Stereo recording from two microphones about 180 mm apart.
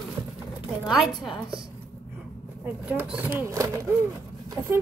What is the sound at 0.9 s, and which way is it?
Speech, centre (ahead or behind).